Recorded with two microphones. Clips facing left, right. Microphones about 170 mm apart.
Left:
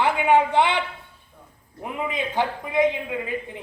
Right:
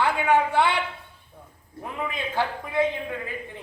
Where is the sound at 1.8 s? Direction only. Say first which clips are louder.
Left 3 dB; 15° left (ahead or behind).